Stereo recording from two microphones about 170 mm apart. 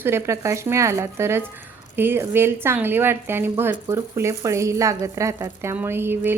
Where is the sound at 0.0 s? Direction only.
15° right (ahead or behind).